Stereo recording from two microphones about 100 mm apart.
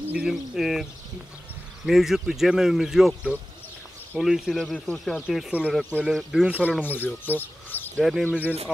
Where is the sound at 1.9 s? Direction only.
5° right (ahead or behind).